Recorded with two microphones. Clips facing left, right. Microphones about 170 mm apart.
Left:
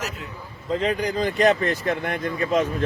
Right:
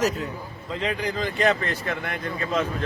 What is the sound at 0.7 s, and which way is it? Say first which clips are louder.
Speech: left 4 dB; 40° left (ahead or behind).